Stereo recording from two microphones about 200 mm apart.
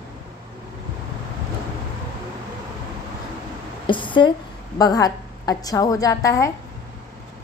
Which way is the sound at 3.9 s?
25° left (ahead or behind).